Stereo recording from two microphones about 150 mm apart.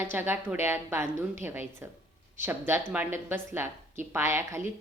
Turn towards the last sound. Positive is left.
turn(degrees=-20)  # may be behind; listen again after turning